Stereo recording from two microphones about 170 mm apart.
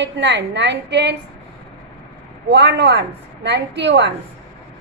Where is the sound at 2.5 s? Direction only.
90° right.